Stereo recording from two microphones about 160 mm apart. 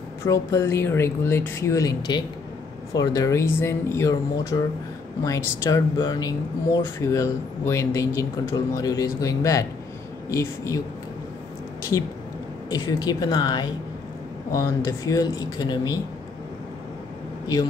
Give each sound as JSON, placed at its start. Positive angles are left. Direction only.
{"t": 0.2, "sound": "speech", "side_deg": 15}
{"t": 12.6, "sound": "speech", "side_deg": 25}